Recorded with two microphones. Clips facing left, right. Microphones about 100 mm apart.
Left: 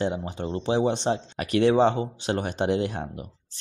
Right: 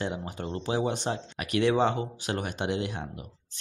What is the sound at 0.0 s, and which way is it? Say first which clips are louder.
Speech: left 5 dB; 25° left (ahead or behind).